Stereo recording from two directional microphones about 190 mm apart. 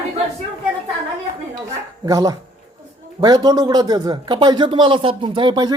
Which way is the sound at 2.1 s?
20° right (ahead or behind).